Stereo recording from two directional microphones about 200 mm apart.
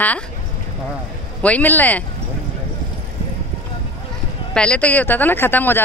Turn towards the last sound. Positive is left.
turn(degrees=10)  # may be behind; listen again after turning